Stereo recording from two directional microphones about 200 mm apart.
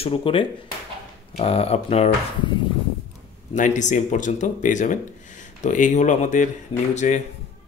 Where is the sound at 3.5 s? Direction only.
40° left (ahead or behind).